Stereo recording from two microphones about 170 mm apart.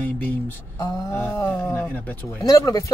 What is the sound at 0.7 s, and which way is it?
Speech, 20° left (ahead or behind).